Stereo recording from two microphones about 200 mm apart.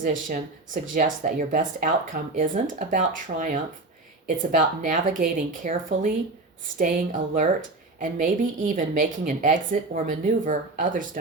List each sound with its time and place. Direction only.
0.0 s speech: 40° right (ahead or behind)